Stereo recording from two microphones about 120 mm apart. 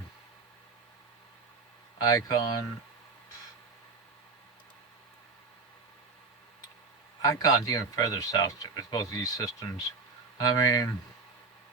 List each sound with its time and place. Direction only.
2.0 s speech: 30° left (ahead or behind)
7.2 s speech: 30° left (ahead or behind)